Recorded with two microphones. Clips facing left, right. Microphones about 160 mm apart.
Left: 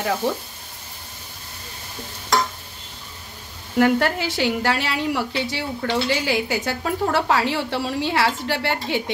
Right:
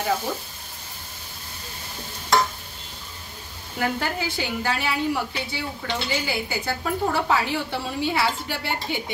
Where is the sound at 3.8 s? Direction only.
80° left.